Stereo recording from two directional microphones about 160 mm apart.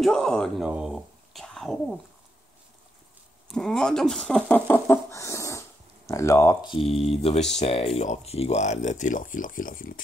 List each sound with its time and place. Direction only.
0.0 s a man's voice: 5° left (ahead or behind)
0.7 s a sound: 5° right (ahead or behind)
3.4 s speech: 5° left (ahead or behind)
6.6 s speech: 30° left (ahead or behind); by 10.0 s 60° left (ahead or behind)